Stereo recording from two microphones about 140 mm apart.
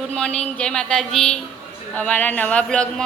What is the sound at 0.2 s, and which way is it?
Speech, 5° left (ahead or behind).